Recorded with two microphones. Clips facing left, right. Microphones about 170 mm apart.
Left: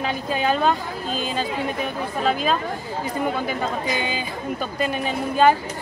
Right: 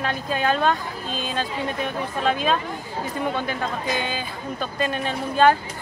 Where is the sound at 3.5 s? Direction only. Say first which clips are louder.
Left 2 dB; 10° left (ahead or behind).